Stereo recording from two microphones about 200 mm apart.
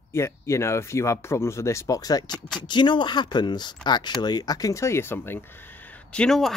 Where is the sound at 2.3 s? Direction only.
5° left (ahead or behind).